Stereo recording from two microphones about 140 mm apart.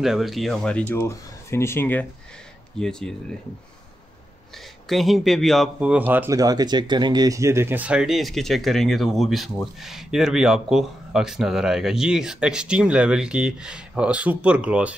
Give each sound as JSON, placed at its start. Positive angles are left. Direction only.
{"t": 0.0, "sound": "speech", "side_deg": 0}
{"t": 0.9, "sound": "speech", "side_deg": 20}
{"t": 4.8, "sound": "speech", "side_deg": 0}
{"t": 5.8, "sound": "speech", "side_deg": -10}
{"t": 6.3, "sound": "speech", "side_deg": -25}